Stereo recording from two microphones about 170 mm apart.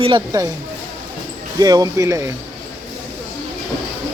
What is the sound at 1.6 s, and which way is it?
Speech, 20° right (ahead or behind).